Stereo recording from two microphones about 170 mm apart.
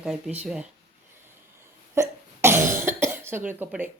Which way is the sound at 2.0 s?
15° right (ahead or behind).